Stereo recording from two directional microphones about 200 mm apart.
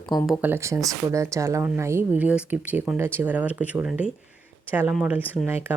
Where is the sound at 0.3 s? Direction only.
10° right (ahead or behind).